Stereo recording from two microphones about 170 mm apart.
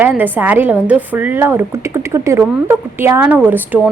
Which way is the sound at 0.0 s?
10° right (ahead or behind).